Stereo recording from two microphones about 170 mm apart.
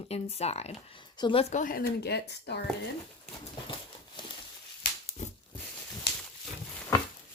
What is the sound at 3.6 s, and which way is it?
Horse, 30° left (ahead or behind).